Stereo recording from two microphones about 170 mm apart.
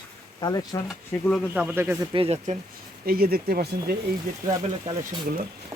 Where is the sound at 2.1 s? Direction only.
35° right (ahead or behind).